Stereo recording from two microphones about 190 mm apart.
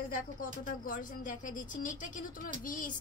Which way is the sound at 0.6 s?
45° left (ahead or behind).